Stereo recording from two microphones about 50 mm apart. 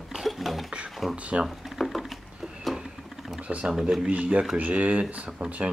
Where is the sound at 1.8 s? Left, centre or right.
Centre.